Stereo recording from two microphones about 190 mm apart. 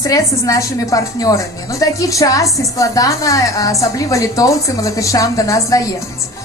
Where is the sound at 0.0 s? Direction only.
20° left (ahead or behind).